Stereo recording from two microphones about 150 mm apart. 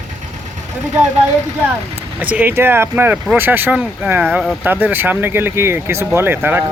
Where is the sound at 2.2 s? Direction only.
10° right (ahead or behind).